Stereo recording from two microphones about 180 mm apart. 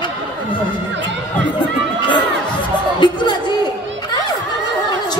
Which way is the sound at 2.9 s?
25° left (ahead or behind).